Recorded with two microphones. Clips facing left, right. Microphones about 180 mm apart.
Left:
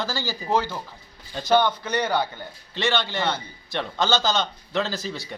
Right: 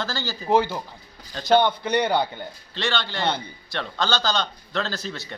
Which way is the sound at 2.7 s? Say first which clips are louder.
Left 3 dB; 15° left (ahead or behind).